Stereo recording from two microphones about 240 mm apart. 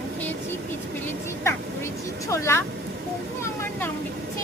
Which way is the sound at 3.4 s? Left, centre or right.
Centre.